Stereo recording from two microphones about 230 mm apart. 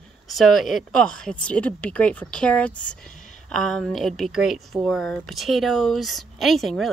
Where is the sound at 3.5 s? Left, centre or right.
Centre.